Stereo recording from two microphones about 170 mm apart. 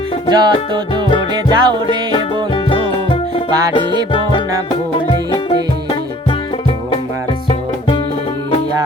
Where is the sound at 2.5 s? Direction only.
30° left (ahead or behind).